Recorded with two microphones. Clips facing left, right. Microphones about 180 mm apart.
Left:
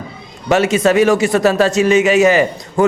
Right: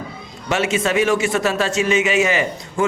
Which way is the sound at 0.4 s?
40° left (ahead or behind).